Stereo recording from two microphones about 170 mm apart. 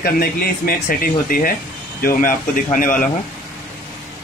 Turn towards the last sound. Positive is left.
turn(degrees=50)  # may be behind; listen again after turning